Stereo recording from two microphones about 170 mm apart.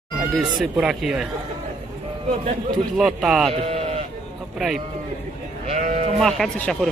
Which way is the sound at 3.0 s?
Centre (ahead or behind).